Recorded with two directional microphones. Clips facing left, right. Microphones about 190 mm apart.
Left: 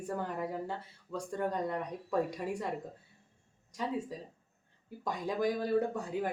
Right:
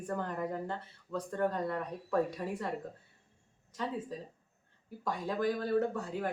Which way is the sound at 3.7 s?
10° left (ahead or behind).